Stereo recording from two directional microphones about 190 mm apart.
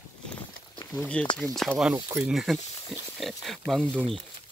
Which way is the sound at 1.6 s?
5° right (ahead or behind).